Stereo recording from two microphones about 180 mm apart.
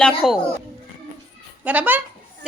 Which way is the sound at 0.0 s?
5° left (ahead or behind).